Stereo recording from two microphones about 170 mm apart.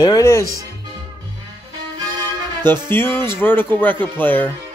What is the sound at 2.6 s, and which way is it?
Speech, 15° left (ahead or behind).